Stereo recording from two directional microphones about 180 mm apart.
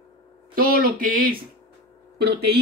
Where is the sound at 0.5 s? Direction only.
55° right (ahead or behind).